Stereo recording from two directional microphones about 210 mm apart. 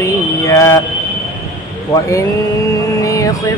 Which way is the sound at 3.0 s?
15° left (ahead or behind).